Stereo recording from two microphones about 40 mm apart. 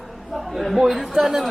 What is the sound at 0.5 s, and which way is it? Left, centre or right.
Speech, centre.